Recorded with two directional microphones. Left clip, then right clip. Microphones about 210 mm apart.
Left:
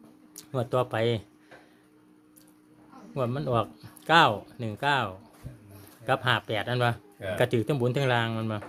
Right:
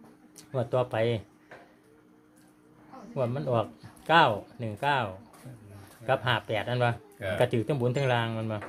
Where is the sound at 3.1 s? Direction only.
30° left (ahead or behind).